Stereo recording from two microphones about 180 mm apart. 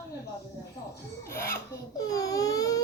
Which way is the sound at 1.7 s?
20° left (ahead or behind).